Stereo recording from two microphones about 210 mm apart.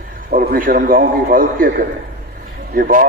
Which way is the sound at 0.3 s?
40° right (ahead or behind).